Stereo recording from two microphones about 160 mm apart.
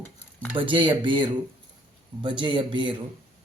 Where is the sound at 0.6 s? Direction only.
30° right (ahead or behind).